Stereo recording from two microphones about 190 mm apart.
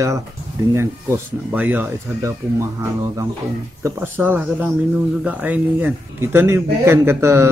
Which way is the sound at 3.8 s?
10° right (ahead or behind).